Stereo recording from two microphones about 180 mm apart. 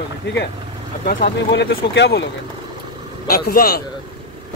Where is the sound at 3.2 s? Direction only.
55° left (ahead or behind).